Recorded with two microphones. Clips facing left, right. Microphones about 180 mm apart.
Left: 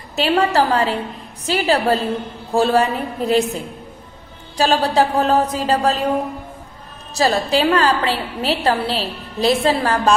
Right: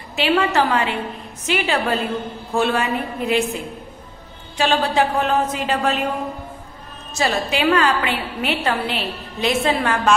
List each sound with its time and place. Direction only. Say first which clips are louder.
0.1 s a woman's voice: left 2 dB; 40° left (ahead or behind)
4.6 s a woman's voice: left 2 dB; 35° left (ahead or behind)
7.2 s a woman's voice: left 4 dB; 35° left (ahead or behind)